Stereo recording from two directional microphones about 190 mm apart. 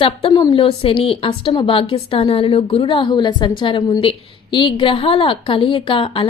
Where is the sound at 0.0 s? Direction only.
30° left (ahead or behind).